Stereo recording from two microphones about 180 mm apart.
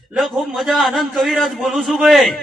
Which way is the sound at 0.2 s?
Centre (ahead or behind).